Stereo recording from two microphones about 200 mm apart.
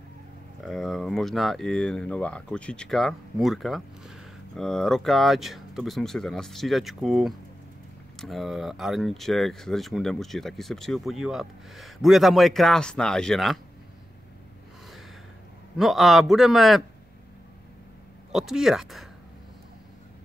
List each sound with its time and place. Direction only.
0.7 s speech: centre (ahead or behind)
15.8 s speech: centre (ahead or behind)
18.3 s speech: centre (ahead or behind)